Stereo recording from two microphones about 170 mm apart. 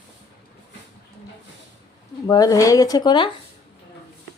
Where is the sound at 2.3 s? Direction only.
20° left (ahead or behind).